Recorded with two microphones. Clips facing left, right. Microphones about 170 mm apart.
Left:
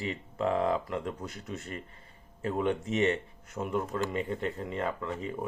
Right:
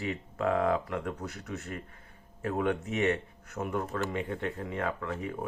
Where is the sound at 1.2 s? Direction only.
70° right (ahead or behind).